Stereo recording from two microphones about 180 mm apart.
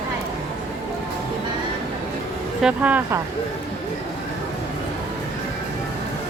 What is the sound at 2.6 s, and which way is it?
Speech, 10° right (ahead or behind).